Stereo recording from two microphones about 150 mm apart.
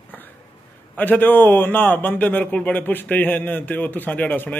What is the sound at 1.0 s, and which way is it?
A man's voice, 10° left (ahead or behind).